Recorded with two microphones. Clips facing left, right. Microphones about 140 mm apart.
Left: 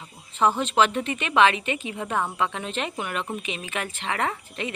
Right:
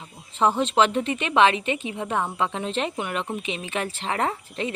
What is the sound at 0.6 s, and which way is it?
A woman's voice, 30° right (ahead or behind).